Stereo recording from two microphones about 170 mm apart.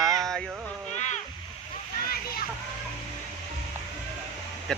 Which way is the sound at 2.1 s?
65° left (ahead or behind).